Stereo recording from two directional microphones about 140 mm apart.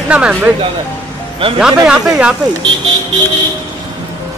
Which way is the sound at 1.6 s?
5° right (ahead or behind).